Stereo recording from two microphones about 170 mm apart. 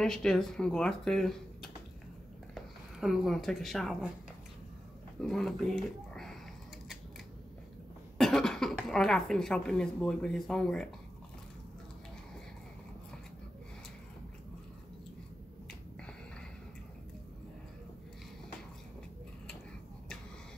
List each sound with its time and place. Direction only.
0.0 s speech: 5° left (ahead or behind)
5.2 s speech: 5° left (ahead or behind)
8.2 s cough: centre (ahead or behind)
8.8 s speech: 5° left (ahead or behind)